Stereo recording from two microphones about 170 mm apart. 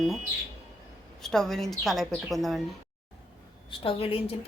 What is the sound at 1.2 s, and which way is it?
A woman's voice, 5° left (ahead or behind).